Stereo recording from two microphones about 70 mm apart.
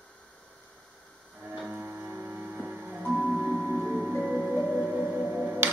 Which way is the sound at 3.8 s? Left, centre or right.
Centre.